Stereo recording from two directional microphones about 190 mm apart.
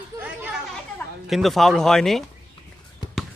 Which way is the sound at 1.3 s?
Centre (ahead or behind).